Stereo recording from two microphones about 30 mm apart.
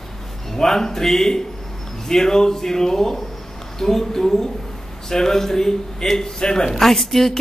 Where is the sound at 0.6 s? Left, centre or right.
Centre.